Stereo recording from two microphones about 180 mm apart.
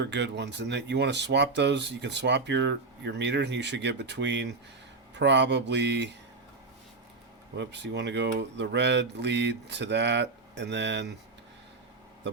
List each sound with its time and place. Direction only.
0.0 s speech: 70° right (ahead or behind)
7.5 s speech: 75° right (ahead or behind)